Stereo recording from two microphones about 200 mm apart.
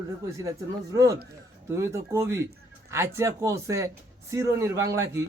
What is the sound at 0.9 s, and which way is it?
Speech, 15° right (ahead or behind).